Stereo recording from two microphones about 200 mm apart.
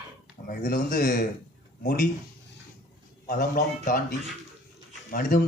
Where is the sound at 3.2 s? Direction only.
40° left (ahead or behind).